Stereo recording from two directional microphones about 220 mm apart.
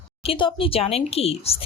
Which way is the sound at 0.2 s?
25° left (ahead or behind).